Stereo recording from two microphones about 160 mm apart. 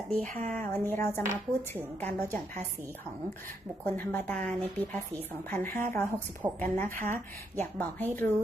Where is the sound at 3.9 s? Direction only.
10° left (ahead or behind).